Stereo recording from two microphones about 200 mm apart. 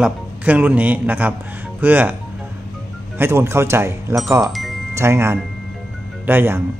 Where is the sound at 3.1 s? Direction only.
10° right (ahead or behind).